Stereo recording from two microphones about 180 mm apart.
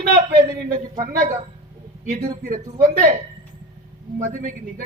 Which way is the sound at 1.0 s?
50° right (ahead or behind).